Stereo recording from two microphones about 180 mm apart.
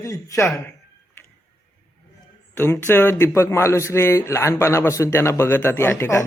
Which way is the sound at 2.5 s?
15° left (ahead or behind).